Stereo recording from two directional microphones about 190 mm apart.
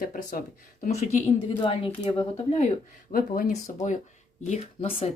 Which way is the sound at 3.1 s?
50° left (ahead or behind).